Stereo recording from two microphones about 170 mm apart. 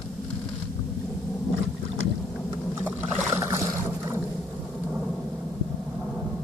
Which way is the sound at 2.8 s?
15° right (ahead or behind).